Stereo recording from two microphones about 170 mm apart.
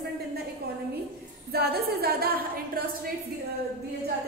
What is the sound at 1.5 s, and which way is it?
A woman's voice, 65° right (ahead or behind).